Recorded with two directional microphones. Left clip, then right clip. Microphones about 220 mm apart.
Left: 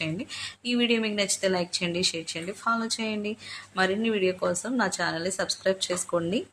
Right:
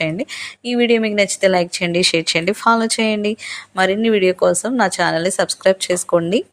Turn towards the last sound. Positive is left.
turn(degrees=-35)  # may be behind; listen again after turning